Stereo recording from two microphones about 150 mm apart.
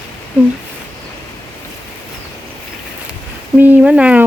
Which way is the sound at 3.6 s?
10° right (ahead or behind).